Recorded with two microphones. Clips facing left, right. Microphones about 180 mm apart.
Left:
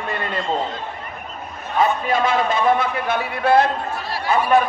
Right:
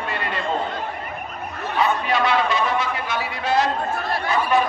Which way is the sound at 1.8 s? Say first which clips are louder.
Left 2 dB; 50° left (ahead or behind).